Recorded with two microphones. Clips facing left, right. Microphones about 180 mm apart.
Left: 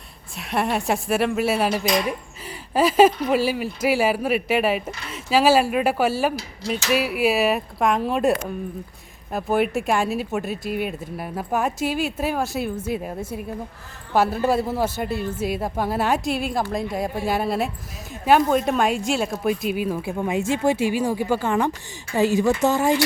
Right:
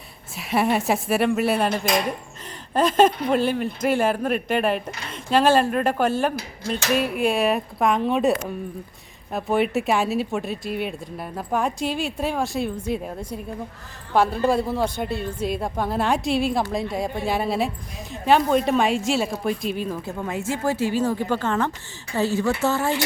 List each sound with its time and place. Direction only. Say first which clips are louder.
0.3 s speech: right 2 dB; centre (ahead or behind); by 23.0 s 15° left (ahead or behind)